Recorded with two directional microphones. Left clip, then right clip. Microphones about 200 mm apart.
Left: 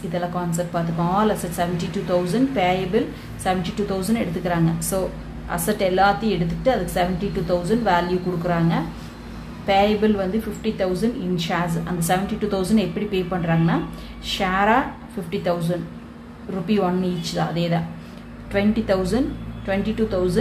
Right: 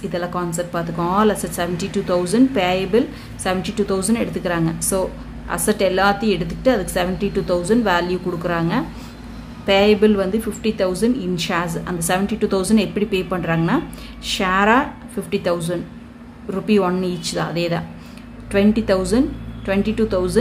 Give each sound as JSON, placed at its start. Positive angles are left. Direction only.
{"t": 0.1, "sound": "a woman's voice", "side_deg": -30}
{"t": 16.6, "sound": "a woman's voice", "side_deg": -35}